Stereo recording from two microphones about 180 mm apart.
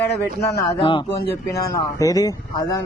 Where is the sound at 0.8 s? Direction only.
30° left (ahead or behind).